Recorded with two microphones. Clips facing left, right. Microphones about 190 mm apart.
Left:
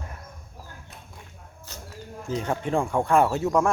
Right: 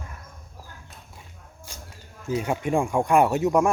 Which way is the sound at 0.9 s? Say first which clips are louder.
Left 2 dB; 60° left (ahead or behind).